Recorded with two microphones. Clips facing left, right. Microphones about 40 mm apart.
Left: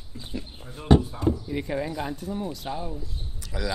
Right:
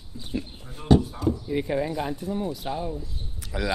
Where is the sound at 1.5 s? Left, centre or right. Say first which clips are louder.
Right 3 dB; centre.